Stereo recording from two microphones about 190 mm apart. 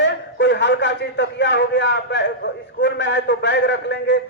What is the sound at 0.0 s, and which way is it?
A man's voice, 70° left (ahead or behind).